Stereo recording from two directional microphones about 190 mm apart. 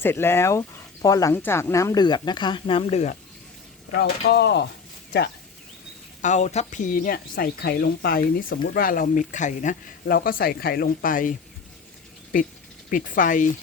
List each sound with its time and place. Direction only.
0.0 s speech: 10° left (ahead or behind); by 3.2 s 35° left (ahead or behind)
3.9 s speech: 60° left (ahead or behind)
6.2 s speech: 40° left (ahead or behind)
12.9 s speech: 45° left (ahead or behind)